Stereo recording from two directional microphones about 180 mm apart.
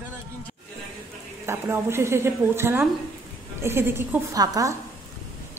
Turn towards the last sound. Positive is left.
turn(degrees=-20)  # may be behind; listen again after turning